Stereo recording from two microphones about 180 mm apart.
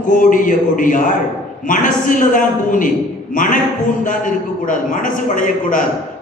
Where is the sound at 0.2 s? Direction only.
50° left (ahead or behind).